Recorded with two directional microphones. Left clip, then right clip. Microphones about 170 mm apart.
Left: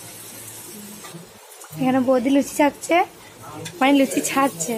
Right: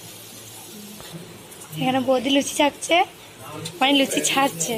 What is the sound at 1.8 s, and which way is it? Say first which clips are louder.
A woman's voice: left 2 dB; 30° left (ahead or behind).